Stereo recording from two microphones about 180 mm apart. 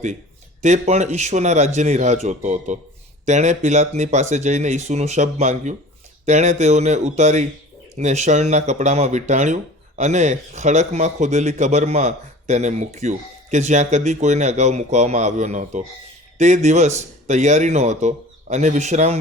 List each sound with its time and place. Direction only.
0.6 s speech: 40° right (ahead or behind)